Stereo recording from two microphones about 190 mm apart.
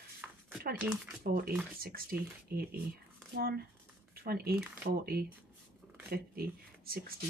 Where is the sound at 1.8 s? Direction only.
50° right (ahead or behind).